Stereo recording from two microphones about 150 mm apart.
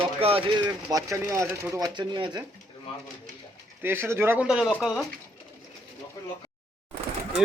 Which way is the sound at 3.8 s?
15° right (ahead or behind).